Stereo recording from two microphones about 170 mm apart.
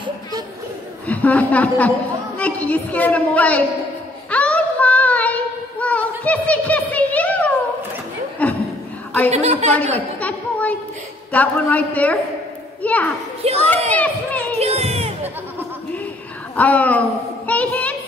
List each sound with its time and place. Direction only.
1.0 s a woman's voice: 10° left (ahead or behind)
4.3 s child singing: 10° left (ahead or behind)
8.4 s chuckle: 10° left (ahead or behind)
9.3 s a woman's voice: 40° right (ahead or behind)
9.9 s a sound: 10° left (ahead or behind)
11.3 s a woman's voice: 10° left (ahead or behind)
14.6 s a sound: 35° right (ahead or behind)
16.5 s a woman's voice: 10° left (ahead or behind)
17.5 s child singing: 10° left (ahead or behind)